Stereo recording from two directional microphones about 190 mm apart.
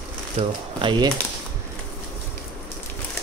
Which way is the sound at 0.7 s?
25° right (ahead or behind).